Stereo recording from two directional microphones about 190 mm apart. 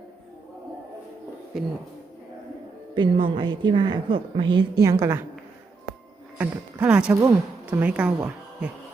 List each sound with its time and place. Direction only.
1.5 s speech: centre (ahead or behind)
2.9 s a woman's voice: 25° right (ahead or behind)
6.4 s a woman's voice: 5° right (ahead or behind)